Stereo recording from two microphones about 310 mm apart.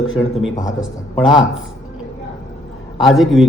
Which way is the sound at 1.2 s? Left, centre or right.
Centre.